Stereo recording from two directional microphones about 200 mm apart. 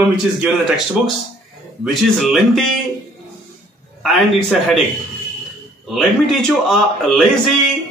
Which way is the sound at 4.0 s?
Centre (ahead or behind).